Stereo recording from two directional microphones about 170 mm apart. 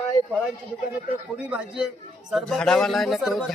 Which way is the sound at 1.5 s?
5° right (ahead or behind).